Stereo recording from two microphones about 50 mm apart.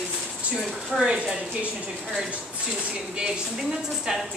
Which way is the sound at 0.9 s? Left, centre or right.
Centre.